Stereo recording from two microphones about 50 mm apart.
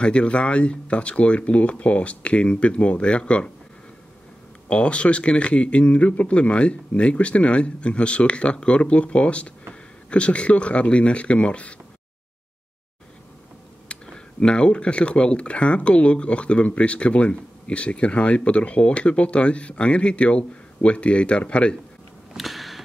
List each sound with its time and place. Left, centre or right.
0.0 s speech: left
4.6 s speech: left
13.8 s speech: centre
22.3 s a sound: centre